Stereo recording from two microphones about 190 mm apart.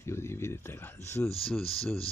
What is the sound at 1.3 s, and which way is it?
Speech, 30° left (ahead or behind).